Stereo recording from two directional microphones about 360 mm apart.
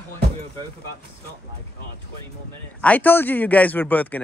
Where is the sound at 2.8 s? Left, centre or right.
Centre.